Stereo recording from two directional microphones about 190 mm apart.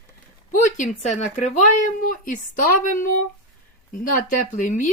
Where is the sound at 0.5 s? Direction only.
40° left (ahead or behind).